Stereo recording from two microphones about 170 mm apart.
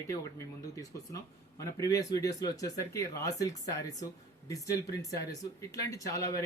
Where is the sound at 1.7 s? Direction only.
20° left (ahead or behind).